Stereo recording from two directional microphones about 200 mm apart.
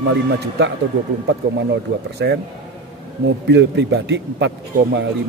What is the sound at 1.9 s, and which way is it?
Speech, 55° right (ahead or behind).